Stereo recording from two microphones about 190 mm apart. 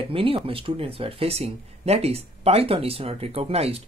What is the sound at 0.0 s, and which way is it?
Speech, 30° right (ahead or behind).